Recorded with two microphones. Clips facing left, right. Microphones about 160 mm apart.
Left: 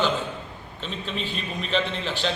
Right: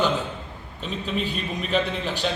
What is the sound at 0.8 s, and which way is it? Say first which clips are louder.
A man's voice: right 4 dB; 10° right (ahead or behind).